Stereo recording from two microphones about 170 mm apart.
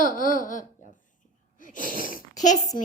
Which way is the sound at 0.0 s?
50° left (ahead or behind).